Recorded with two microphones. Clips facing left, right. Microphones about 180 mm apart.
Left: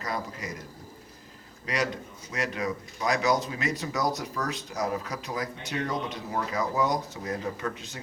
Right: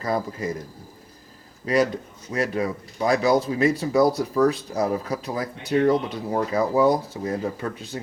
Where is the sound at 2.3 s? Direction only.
35° right (ahead or behind).